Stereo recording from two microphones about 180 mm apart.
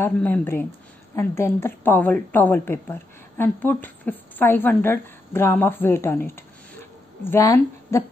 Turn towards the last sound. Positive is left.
turn(degrees=15)  # may be behind; listen again after turning